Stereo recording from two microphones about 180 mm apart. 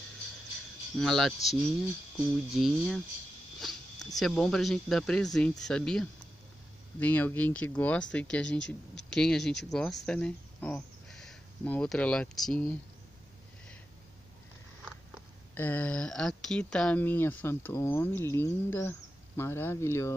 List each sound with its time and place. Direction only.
0.9 s speech: centre (ahead or behind)
8.5 s speech: 75° left (ahead or behind)
9.1 s speech: 5° left (ahead or behind)
15.5 s speech: 10° left (ahead or behind)